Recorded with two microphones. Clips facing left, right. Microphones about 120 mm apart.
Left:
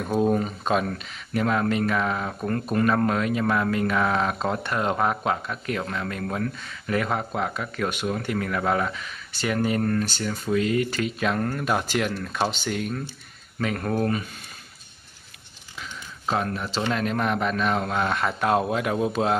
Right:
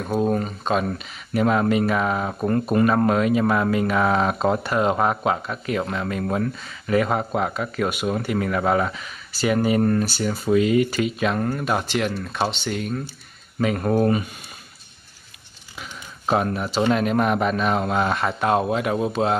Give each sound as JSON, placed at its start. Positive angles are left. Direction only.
{"t": 0.0, "sound": "a man's voice", "side_deg": 0}
{"t": 0.8, "sound": "a man's voice", "side_deg": -10}
{"t": 13.6, "sound": "speech", "side_deg": -10}
{"t": 15.8, "sound": "a sound", "side_deg": -15}
{"t": 16.9, "sound": "a man's voice", "side_deg": -10}